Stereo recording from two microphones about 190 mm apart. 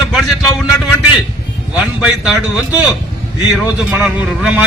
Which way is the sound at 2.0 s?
5° right (ahead or behind).